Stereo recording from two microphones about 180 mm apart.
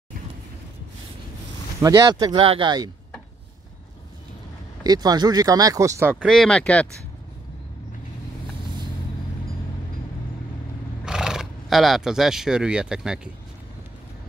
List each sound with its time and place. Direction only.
1.8 s speech: 20° right (ahead or behind)
4.8 s speech: 20° right (ahead or behind)
6.1 s speech: 5° left (ahead or behind)
11.1 s speech: 5° right (ahead or behind)